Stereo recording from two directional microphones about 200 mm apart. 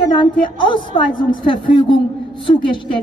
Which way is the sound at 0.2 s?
25° left (ahead or behind).